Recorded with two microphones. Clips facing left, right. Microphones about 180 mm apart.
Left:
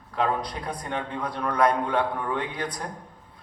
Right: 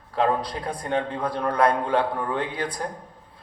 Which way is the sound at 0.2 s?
30° right (ahead or behind).